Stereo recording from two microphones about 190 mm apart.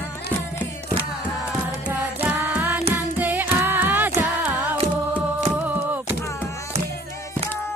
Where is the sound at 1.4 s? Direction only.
5° right (ahead or behind).